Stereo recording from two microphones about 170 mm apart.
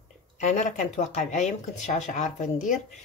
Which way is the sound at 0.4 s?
45° left (ahead or behind).